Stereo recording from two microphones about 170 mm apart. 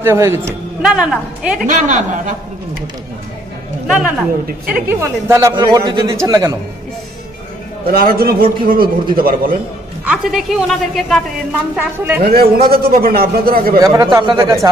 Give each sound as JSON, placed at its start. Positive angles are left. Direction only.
{"t": 0.0, "sound": "a woman's voice", "side_deg": -15}
{"t": 1.6, "sound": "a man's voice", "side_deg": -45}
{"t": 3.8, "sound": "a woman's voice", "side_deg": 0}
{"t": 5.6, "sound": "a man's voice", "side_deg": -25}
{"t": 7.8, "sound": "a man's voice", "side_deg": -60}
{"t": 10.0, "sound": "a woman's voice", "side_deg": -5}
{"t": 12.2, "sound": "a man's voice", "side_deg": -65}
{"t": 13.7, "sound": "a man's voice", "side_deg": -20}